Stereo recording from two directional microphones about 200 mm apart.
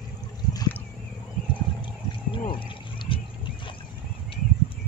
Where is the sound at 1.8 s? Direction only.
25° left (ahead or behind).